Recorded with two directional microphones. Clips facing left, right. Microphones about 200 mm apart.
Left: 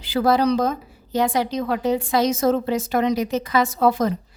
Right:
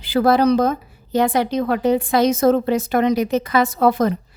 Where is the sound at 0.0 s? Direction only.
60° right (ahead or behind).